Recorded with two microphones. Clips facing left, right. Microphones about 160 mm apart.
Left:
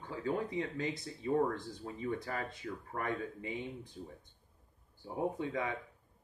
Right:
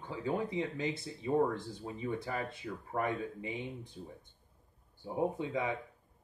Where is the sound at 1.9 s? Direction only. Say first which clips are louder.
Right 1 dB; 20° right (ahead or behind).